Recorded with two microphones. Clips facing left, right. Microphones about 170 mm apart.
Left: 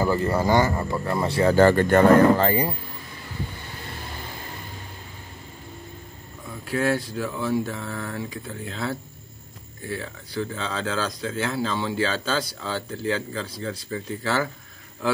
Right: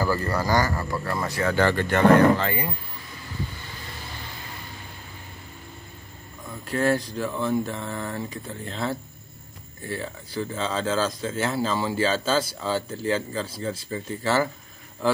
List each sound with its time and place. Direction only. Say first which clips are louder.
0.0 s speech: left 3 dB; 20° left (ahead or behind); by 2.7 s 35° left (ahead or behind)
6.7 s speech: right 1 dB; 5° left (ahead or behind)